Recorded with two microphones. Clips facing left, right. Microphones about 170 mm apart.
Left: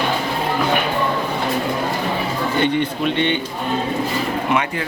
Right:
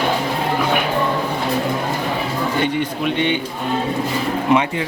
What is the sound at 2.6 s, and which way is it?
Speech, 10° right (ahead or behind).